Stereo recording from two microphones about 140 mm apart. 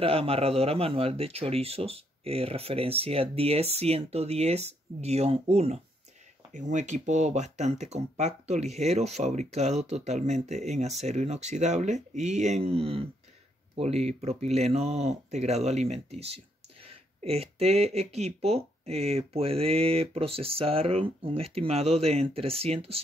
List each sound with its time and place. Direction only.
0.0 s speech: 45° right (ahead or behind)